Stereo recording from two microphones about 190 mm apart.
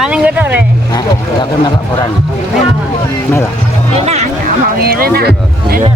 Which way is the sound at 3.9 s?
35° right (ahead or behind).